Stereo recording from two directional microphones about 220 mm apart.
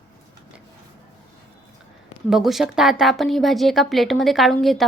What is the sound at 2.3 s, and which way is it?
A woman's voice, centre (ahead or behind).